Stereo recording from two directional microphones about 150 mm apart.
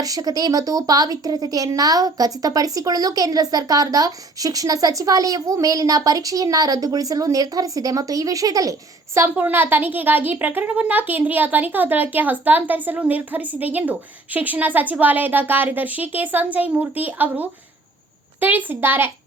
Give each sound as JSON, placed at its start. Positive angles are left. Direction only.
{"t": 0.0, "sound": "a woman's voice", "side_deg": -25}
{"t": 9.1, "sound": "a woman's voice", "side_deg": -15}